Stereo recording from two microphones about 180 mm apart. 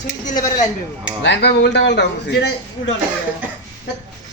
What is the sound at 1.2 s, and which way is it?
Speech, 80° left.